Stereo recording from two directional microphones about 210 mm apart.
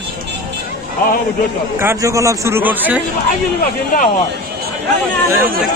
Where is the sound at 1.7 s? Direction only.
10° right (ahead or behind).